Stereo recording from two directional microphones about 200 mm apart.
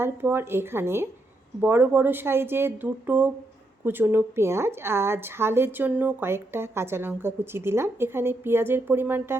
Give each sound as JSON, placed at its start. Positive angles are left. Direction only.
{"t": 0.0, "sound": "a woman's voice", "side_deg": -10}